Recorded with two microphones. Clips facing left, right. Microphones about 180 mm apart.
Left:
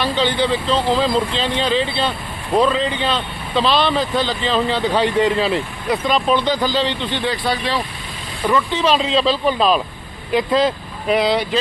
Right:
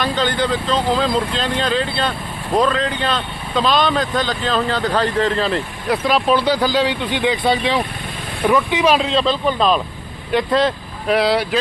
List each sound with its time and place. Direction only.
0.0 s speech: 5° left (ahead or behind); by 7.8 s 20° right (ahead or behind)
8.4 s speech: 10° right (ahead or behind)
9.0 s speech: centre (ahead or behind)